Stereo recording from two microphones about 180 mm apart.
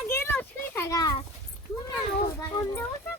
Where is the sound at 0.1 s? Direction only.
15° left (ahead or behind).